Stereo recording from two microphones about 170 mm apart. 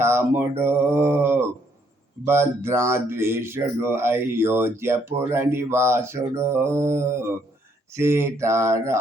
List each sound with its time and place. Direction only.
0.0 s speech: 15° right (ahead or behind)